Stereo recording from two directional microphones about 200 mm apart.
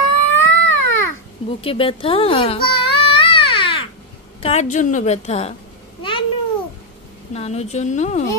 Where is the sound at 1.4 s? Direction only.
25° left (ahead or behind).